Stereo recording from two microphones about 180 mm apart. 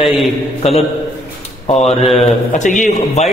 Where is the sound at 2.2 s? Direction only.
45° left (ahead or behind).